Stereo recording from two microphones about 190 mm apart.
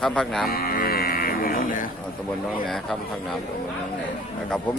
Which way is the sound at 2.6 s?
Centre (ahead or behind).